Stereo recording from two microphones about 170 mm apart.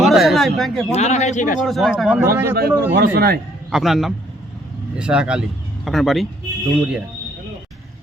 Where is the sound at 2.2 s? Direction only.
15° right (ahead or behind).